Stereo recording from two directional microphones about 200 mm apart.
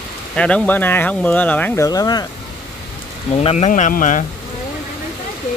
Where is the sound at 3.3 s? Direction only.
30° left (ahead or behind).